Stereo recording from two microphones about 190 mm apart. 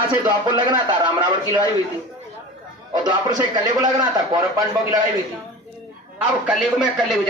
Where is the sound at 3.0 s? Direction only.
20° right (ahead or behind).